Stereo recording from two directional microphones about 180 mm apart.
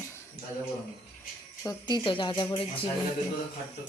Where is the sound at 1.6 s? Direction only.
25° left (ahead or behind).